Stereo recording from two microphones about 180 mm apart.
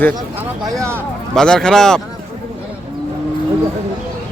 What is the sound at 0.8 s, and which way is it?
Speech, 15° right (ahead or behind).